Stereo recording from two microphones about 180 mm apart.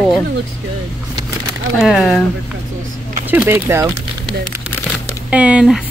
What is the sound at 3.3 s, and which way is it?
Speech, 10° right (ahead or behind).